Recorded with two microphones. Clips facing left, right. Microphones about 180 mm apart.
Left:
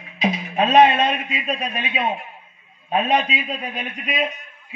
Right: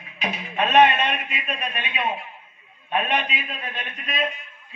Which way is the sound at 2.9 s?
35° left (ahead or behind).